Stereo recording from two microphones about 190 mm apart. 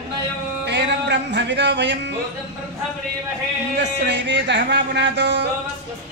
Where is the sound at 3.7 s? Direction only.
65° right (ahead or behind).